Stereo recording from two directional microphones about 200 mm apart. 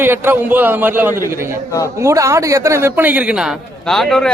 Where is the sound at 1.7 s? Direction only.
15° left (ahead or behind).